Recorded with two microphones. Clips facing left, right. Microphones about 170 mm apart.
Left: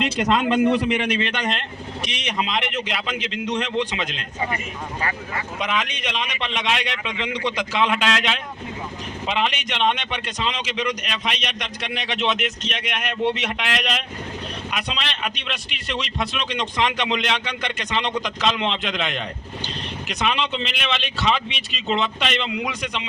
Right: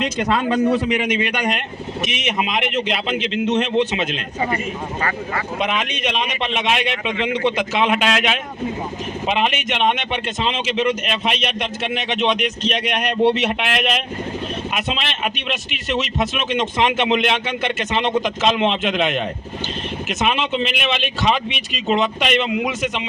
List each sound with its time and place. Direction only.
0.4 s a man's voice: 5° right (ahead or behind); by 4.2 s 20° right (ahead or behind)
5.5 s a man's voice: 25° right (ahead or behind)
7.1 s speech: 55° right (ahead or behind)
7.4 s a man's voice: 20° right (ahead or behind)
12.7 s a man's voice: 35° right (ahead or behind)